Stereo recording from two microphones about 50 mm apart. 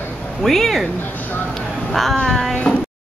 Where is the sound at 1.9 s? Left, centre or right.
Centre.